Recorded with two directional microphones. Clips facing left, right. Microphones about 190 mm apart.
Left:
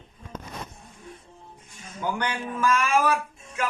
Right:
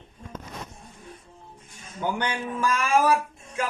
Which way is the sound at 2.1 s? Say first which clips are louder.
Right 1 dB; 30° right (ahead or behind).